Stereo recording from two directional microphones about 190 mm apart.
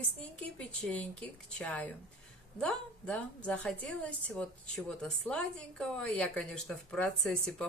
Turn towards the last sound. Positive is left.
turn(degrees=5)  # may be behind; listen again after turning